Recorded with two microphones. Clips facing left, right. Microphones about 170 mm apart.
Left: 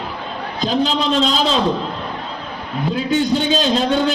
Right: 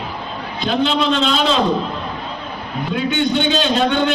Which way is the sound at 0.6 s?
35° left (ahead or behind).